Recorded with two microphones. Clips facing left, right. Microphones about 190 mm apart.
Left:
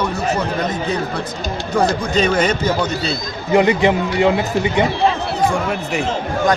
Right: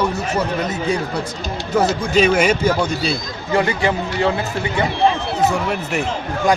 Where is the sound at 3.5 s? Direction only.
20° left (ahead or behind).